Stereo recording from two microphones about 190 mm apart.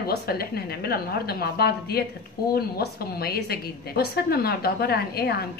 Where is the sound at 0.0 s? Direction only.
55° left (ahead or behind).